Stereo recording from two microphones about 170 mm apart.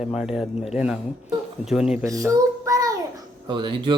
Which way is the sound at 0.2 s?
5° right (ahead or behind).